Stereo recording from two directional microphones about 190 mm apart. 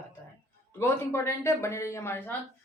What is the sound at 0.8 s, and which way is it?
Speech, 15° left (ahead or behind).